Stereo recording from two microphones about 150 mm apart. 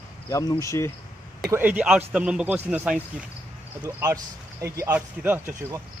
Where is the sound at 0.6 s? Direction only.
20° left (ahead or behind).